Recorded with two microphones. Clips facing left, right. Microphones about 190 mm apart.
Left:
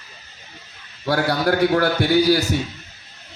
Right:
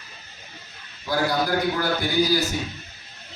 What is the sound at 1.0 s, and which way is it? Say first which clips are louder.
A man's voice: left 4 dB; 70° left (ahead or behind).